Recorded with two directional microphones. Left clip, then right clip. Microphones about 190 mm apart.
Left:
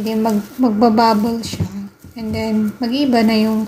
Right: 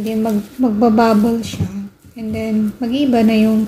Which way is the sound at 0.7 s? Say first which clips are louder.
Even; 5° right (ahead or behind).